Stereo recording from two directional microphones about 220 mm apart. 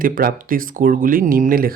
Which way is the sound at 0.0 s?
40° right (ahead or behind).